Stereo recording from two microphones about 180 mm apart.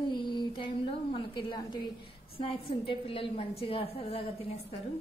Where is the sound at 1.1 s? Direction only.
25° left (ahead or behind).